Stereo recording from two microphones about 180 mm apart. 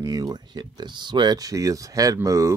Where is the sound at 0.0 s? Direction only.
20° right (ahead or behind).